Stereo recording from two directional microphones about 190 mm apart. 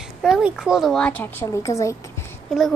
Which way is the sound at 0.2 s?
5° right (ahead or behind).